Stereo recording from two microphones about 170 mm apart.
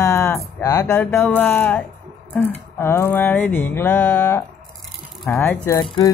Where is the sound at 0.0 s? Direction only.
15° left (ahead or behind).